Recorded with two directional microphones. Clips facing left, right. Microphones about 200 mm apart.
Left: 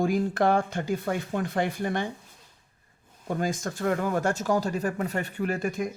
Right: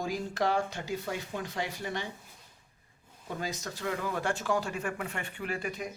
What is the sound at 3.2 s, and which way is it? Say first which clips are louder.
Speech: left 8 dB; 50° left (ahead or behind).